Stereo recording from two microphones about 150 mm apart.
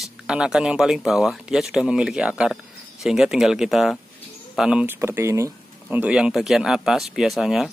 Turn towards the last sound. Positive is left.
turn(degrees=0)  # may be behind; listen again after turning